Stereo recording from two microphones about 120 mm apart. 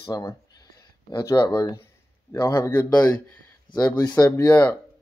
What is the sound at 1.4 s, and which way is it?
Speech, 20° left (ahead or behind).